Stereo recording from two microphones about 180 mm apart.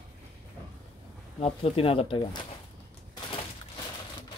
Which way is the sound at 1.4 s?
30° left (ahead or behind).